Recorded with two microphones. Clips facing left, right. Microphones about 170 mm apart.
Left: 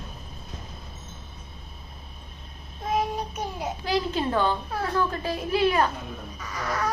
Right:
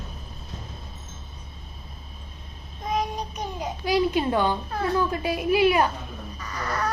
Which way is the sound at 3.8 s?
15° right (ahead or behind).